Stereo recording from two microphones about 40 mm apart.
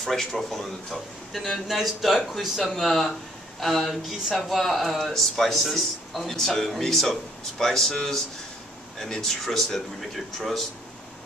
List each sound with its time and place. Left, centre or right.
0.0 s a man's voice: centre